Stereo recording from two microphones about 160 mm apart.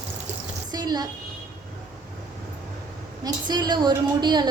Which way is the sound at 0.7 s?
25° right (ahead or behind).